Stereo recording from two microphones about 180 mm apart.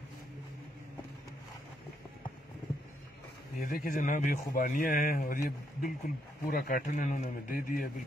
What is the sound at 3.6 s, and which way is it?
Speech, 50° left (ahead or behind).